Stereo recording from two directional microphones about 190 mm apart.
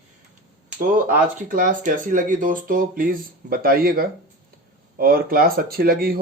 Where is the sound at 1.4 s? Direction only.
45° right (ahead or behind).